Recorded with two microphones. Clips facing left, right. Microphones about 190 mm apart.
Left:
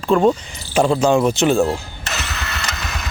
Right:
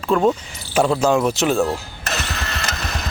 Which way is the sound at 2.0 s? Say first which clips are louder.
Right 1 dB; 40° right (ahead or behind).